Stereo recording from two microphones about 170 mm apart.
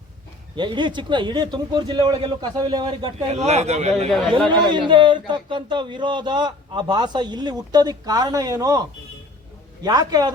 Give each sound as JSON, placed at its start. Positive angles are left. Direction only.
{"t": 0.5, "sound": "a man's voice", "side_deg": -25}
{"t": 3.2, "sound": "a man's voice", "side_deg": -40}
{"t": 4.1, "sound": "speech", "side_deg": 0}
{"t": 4.5, "sound": "a man's voice", "side_deg": -25}